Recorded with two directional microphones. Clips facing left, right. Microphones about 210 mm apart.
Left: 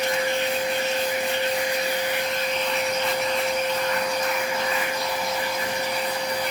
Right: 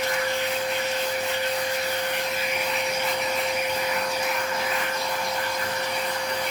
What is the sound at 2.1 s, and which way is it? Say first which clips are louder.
Vacuum cleaner: left 2 dB; 5° right (ahead or behind).